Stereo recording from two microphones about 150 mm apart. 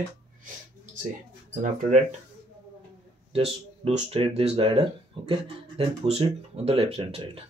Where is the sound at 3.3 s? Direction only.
40° right (ahead or behind).